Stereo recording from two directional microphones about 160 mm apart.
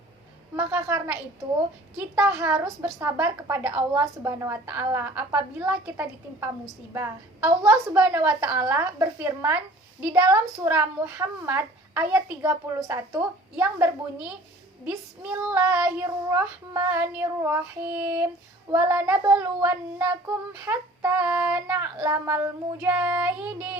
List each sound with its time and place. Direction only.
0.5 s a woman's voice: 20° right (ahead or behind)
10.6 s a woman's voice: 15° right (ahead or behind)